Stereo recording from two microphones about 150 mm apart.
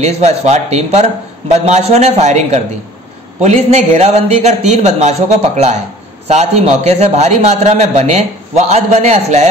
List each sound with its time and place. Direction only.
0.0 s a man's voice: 45° right (ahead or behind)